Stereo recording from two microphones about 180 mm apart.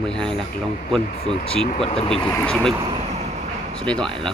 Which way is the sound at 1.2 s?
35° left (ahead or behind).